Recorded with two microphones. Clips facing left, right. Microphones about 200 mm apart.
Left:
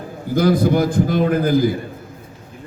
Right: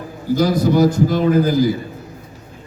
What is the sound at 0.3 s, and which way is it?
A man's voice, 55° left (ahead or behind).